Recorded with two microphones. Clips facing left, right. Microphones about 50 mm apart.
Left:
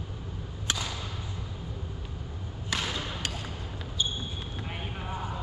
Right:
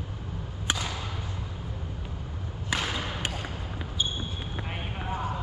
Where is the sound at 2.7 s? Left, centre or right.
Centre.